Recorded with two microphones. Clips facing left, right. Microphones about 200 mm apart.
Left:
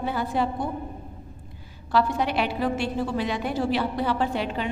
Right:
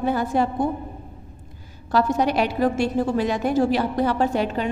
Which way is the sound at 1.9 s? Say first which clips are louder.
Right 4 dB; 45° right (ahead or behind).